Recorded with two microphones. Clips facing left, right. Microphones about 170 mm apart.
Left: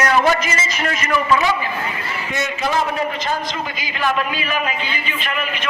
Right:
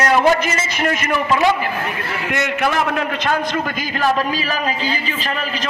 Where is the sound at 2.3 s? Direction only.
65° right (ahead or behind).